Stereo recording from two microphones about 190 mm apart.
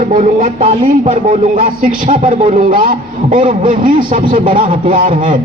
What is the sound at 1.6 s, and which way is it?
Speech, 45° right (ahead or behind).